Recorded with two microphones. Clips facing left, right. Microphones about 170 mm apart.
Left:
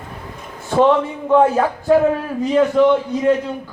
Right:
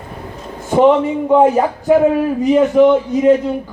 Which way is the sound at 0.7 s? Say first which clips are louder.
Right 4 dB; 15° right (ahead or behind).